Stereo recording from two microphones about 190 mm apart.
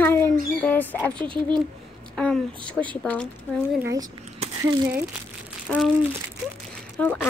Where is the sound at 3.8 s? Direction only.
15° right (ahead or behind).